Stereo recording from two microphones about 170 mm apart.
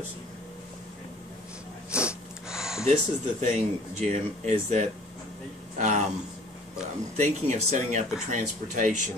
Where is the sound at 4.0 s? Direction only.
45° right (ahead or behind).